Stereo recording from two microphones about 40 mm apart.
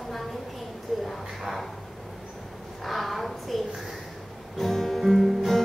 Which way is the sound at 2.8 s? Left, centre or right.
Centre.